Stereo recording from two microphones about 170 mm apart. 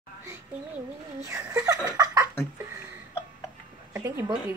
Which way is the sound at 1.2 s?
20° right (ahead or behind).